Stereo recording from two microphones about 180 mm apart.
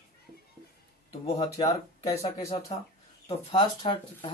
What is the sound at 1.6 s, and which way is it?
Speech, 20° left (ahead or behind).